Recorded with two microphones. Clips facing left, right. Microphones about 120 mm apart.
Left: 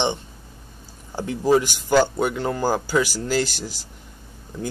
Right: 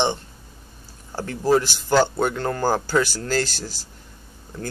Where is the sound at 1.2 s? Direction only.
15° left (ahead or behind).